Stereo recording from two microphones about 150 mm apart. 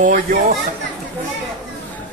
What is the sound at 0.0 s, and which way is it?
Speech, 65° right (ahead or behind).